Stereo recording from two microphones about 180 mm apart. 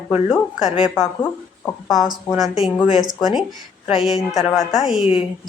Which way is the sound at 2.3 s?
Centre (ahead or behind).